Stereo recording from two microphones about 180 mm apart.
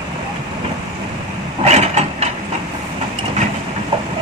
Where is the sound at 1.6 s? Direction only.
35° right (ahead or behind).